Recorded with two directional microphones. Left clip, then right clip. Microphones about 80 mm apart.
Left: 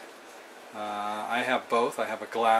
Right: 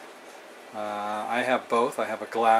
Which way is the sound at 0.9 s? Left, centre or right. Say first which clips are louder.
Right 2 dB; centre.